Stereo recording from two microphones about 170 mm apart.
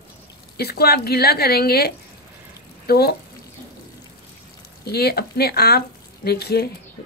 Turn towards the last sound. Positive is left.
turn(degrees=70)  # may be behind; listen again after turning